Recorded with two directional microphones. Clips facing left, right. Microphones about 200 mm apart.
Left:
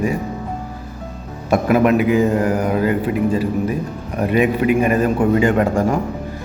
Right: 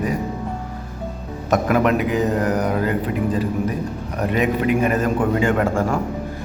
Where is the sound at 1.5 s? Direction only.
10° left (ahead or behind).